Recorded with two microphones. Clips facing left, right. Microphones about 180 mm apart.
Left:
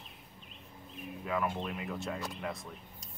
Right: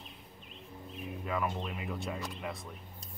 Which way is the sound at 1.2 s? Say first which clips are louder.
Left 1 dB; centre (ahead or behind).